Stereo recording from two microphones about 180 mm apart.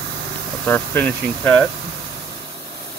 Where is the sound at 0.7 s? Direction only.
10° left (ahead or behind).